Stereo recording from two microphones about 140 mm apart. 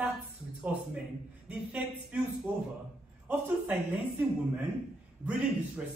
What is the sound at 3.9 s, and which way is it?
A man's voice, 10° right (ahead or behind).